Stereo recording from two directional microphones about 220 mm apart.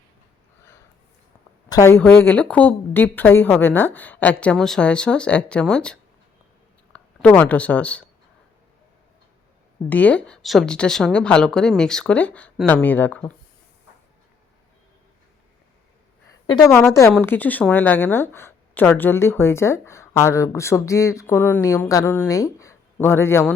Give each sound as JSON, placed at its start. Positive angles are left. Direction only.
{"t": 1.7, "sound": "speech", "side_deg": 10}
{"t": 9.9, "sound": "a woman's voice", "side_deg": 5}
{"t": 16.5, "sound": "speech", "side_deg": 15}